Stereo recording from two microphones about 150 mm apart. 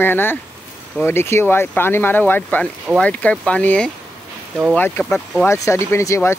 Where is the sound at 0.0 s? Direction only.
15° left (ahead or behind).